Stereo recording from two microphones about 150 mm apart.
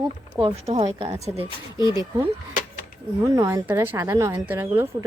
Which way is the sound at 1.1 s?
20° right (ahead or behind).